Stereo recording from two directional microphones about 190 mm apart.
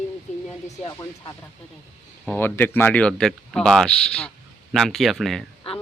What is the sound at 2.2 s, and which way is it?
Speech, 10° left (ahead or behind).